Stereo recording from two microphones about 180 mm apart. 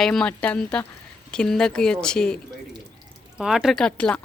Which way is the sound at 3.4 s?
5° right (ahead or behind).